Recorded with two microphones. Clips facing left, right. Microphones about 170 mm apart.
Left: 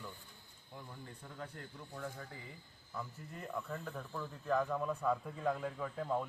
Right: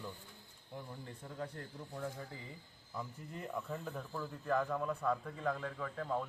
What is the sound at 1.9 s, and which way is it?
Speech, 15° right (ahead or behind).